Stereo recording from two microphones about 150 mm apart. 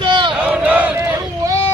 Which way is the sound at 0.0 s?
35° right (ahead or behind).